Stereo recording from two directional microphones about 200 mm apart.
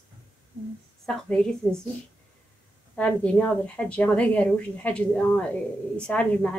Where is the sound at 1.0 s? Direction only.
5° left (ahead or behind).